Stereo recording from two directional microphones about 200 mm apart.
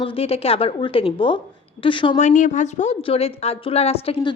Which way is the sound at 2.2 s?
40° left (ahead or behind).